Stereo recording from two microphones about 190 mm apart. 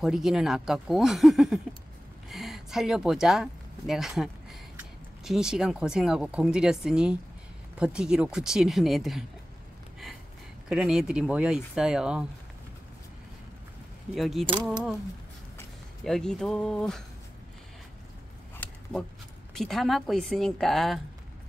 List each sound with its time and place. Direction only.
0.0 s speech: centre (ahead or behind)
10.7 s speech: 5° right (ahead or behind)
14.1 s speech: centre (ahead or behind)
16.0 s speech: centre (ahead or behind)
18.6 s a sound: 5° left (ahead or behind)
19.5 s speech: centre (ahead or behind)